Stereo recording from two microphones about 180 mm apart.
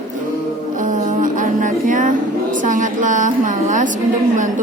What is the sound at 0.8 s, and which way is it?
Music, 45° right (ahead or behind).